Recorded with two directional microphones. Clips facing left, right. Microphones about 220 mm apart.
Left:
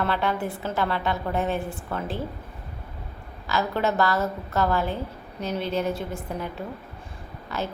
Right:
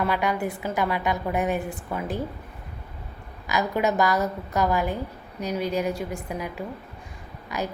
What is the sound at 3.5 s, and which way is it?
A woman's voice, 15° right (ahead or behind).